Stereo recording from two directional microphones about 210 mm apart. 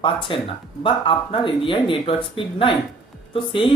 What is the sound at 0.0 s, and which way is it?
Speech, 25° left (ahead or behind).